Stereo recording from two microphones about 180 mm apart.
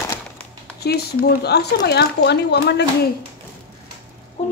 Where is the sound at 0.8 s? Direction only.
65° left (ahead or behind).